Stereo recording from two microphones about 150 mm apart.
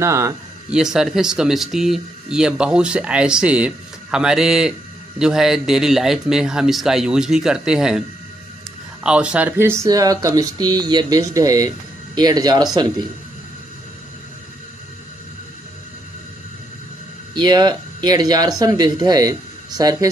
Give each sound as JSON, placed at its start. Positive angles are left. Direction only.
{"t": 0.0, "sound": "speech", "side_deg": -20}
{"t": 0.7, "sound": "speech", "side_deg": -5}
{"t": 9.0, "sound": "speech", "side_deg": -5}
{"t": 17.3, "sound": "speech", "side_deg": -30}